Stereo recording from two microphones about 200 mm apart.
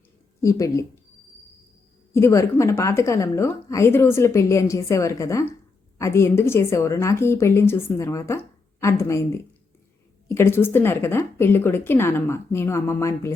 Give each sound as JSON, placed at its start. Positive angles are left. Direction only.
{"t": 0.4, "sound": "a woman's voice", "side_deg": 15}
{"t": 2.1, "sound": "a woman's voice", "side_deg": 15}
{"t": 10.2, "sound": "a woman's voice", "side_deg": 10}